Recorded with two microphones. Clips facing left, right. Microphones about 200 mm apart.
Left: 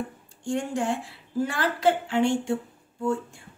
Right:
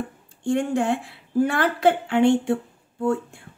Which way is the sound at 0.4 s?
60° right (ahead or behind).